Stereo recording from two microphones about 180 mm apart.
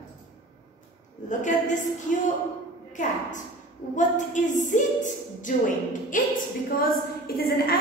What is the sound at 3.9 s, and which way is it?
A woman's voice, 45° left (ahead or behind).